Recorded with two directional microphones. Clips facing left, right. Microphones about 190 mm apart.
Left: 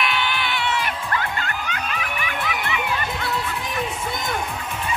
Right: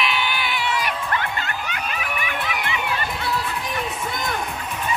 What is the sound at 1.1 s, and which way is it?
Music, 20° right (ahead or behind).